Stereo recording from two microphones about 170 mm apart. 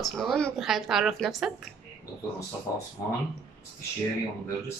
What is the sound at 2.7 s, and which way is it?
Speech, 20° left (ahead or behind).